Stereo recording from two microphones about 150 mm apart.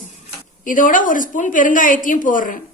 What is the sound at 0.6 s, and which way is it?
A woman's voice, 65° left (ahead or behind).